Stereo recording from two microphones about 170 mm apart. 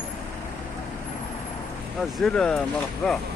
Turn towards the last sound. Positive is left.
turn(degrees=5)  # may be behind; listen again after turning